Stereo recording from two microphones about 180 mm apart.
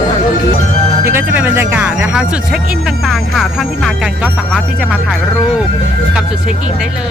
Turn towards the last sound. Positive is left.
turn(degrees=-5)  # may be behind; listen again after turning